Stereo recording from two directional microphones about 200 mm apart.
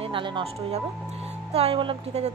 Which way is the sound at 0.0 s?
25° right (ahead or behind).